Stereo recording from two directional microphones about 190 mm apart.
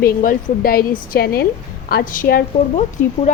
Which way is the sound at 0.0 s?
50° left (ahead or behind).